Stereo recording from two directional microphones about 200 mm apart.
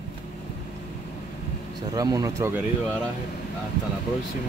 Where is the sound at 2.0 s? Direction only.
20° right (ahead or behind).